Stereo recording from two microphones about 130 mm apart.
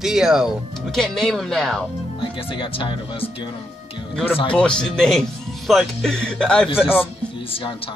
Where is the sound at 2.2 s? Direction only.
40° left (ahead or behind).